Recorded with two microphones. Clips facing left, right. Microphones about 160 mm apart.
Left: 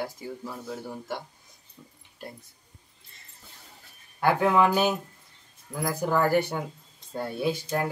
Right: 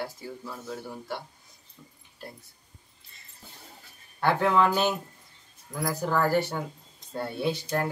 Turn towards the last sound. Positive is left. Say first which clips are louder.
# left 1 dB
turn(degrees=10)  # may be behind; listen again after turning